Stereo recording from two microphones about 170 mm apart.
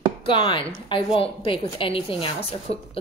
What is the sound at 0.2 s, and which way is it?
A woman's voice, 30° left (ahead or behind).